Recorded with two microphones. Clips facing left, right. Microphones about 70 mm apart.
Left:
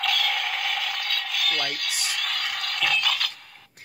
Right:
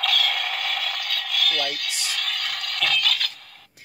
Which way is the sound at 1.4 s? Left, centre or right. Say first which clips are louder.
Right 1 dB; left.